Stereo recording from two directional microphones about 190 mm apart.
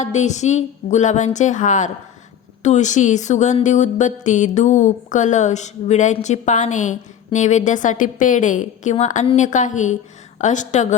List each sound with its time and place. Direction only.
0.0 s speech: 40° left (ahead or behind)